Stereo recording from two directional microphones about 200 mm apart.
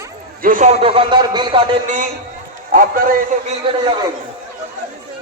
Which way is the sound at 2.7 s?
45° right (ahead or behind).